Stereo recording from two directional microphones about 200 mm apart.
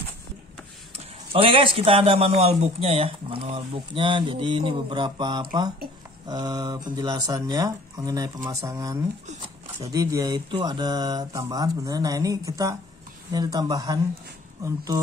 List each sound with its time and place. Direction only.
0.9 s a man's voice: 30° right (ahead or behind)